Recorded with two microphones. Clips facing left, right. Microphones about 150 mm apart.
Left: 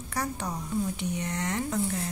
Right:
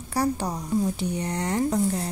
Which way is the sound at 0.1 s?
35° right (ahead or behind).